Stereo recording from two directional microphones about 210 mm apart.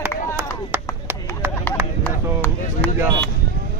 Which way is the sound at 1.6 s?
10° left (ahead or behind).